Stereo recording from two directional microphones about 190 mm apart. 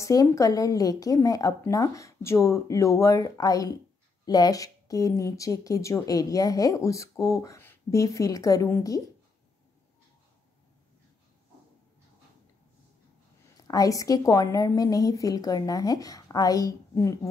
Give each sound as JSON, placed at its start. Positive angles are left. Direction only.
{"t": 0.0, "sound": "speech", "side_deg": 15}
{"t": 13.6, "sound": "a woman's voice", "side_deg": 20}